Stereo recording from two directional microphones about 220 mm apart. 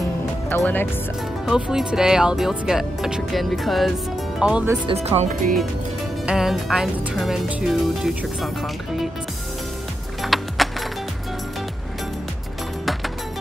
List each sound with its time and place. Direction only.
0.5 s speech: 10° left (ahead or behind)
1.4 s speech: centre (ahead or behind)
4.8 s speech: 30° right (ahead or behind)
6.2 s speech: centre (ahead or behind)
10.2 s music: centre (ahead or behind)